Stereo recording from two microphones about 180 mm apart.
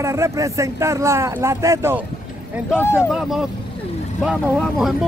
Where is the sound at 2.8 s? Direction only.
15° left (ahead or behind).